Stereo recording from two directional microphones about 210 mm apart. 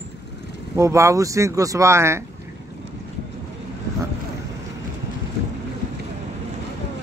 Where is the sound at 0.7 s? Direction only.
15° right (ahead or behind).